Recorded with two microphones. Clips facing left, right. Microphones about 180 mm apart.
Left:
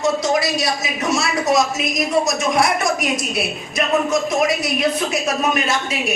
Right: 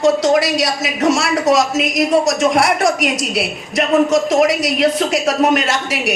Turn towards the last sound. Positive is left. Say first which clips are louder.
# right 3 dB
turn(degrees=-85)